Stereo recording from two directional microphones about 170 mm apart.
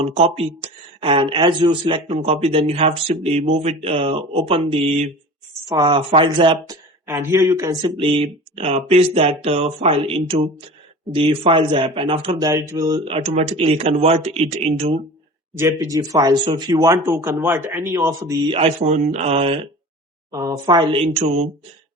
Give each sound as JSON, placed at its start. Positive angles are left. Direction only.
{"t": 0.0, "sound": "speech", "side_deg": -35}
{"t": 5.6, "sound": "speech", "side_deg": -25}
{"t": 7.1, "sound": "speech", "side_deg": -15}
{"t": 12.4, "sound": "speech", "side_deg": -20}
{"t": 13.1, "sound": "speech", "side_deg": -40}
{"t": 15.5, "sound": "speech", "side_deg": -15}
{"t": 20.3, "sound": "speech", "side_deg": -20}